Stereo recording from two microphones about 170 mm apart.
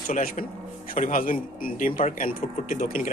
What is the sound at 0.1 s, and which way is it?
A man's voice, 50° left (ahead or behind).